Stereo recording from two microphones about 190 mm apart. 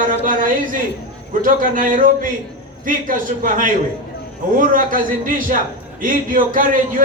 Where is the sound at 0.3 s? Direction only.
45° right (ahead or behind).